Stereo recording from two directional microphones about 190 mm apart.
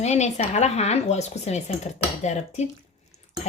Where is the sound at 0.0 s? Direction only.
35° left (ahead or behind).